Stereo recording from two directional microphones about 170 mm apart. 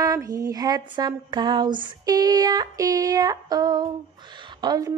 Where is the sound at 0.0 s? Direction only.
20° right (ahead or behind).